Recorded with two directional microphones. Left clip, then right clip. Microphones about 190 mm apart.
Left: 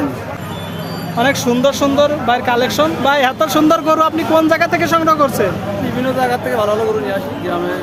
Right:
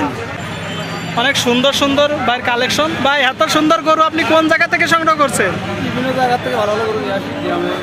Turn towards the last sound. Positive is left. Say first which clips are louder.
# right 1 dB
turn(degrees=0)  # may be behind; listen again after turning